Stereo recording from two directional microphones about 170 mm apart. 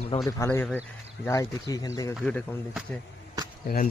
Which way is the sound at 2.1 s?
Centre (ahead or behind).